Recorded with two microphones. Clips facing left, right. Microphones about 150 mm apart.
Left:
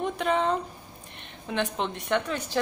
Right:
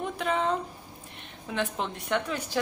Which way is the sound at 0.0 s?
5° right (ahead or behind).